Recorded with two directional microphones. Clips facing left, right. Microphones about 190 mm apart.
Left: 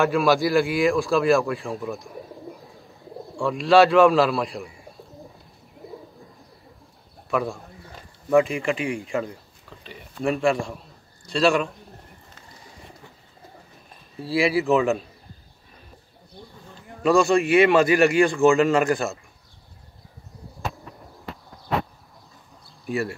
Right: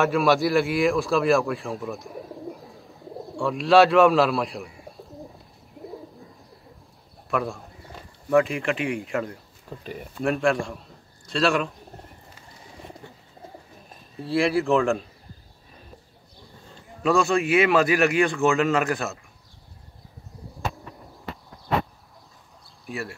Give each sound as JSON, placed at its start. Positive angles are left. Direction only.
{"t": 0.0, "sound": "speech", "side_deg": 0}
{"t": 5.8, "sound": "bird", "side_deg": 0}
{"t": 7.2, "sound": "a man's voice", "side_deg": 0}
{"t": 9.7, "sound": "speech", "side_deg": -45}
{"t": 10.1, "sound": "a man's voice", "side_deg": 0}
{"t": 14.2, "sound": "a man's voice", "side_deg": 0}
{"t": 17.0, "sound": "a man's voice", "side_deg": 0}
{"t": 20.9, "sound": "a sound", "side_deg": 0}
{"t": 22.8, "sound": "a man's voice", "side_deg": 0}